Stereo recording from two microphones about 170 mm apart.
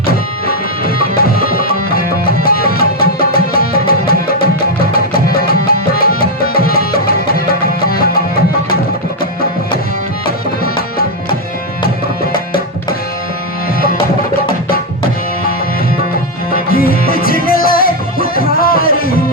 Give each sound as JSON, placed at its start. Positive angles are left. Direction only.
{"t": 0.4, "sound": "music", "side_deg": 60}
{"t": 10.2, "sound": "music", "side_deg": 60}
{"t": 16.5, "sound": "music", "side_deg": 60}